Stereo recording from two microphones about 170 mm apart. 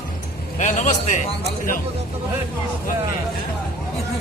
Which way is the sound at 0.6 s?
45° left (ahead or behind).